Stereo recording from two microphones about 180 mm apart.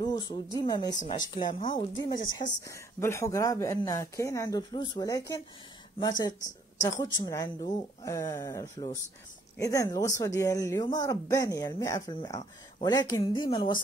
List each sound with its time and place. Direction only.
0.0 s speech: 20° left (ahead or behind)